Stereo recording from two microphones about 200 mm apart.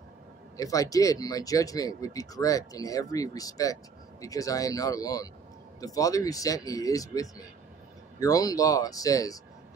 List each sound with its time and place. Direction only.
0.6 s speech: 15° left (ahead or behind)